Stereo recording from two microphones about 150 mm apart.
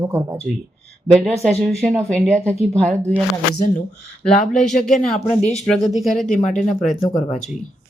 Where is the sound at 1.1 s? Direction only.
5° left (ahead or behind).